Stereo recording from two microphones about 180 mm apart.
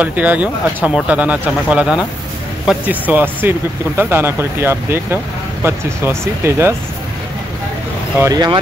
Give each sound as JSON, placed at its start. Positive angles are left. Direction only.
{"t": 0.0, "sound": "speech", "side_deg": -10}
{"t": 8.2, "sound": "speech", "side_deg": -20}